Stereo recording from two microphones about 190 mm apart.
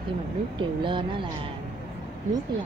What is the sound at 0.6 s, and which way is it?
Speech, 25° right (ahead or behind).